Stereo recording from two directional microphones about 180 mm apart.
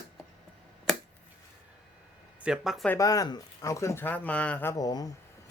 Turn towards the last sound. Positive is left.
turn(degrees=20)  # may be behind; listen again after turning